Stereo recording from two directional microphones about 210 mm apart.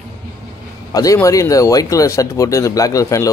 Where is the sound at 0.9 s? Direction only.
15° left (ahead or behind).